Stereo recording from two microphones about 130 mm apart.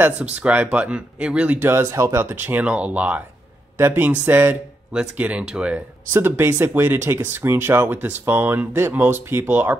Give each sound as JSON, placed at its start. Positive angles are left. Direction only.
{"t": 0.0, "sound": "speech", "side_deg": -10}